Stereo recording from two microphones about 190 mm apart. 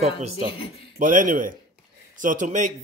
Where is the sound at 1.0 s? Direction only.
45° right (ahead or behind).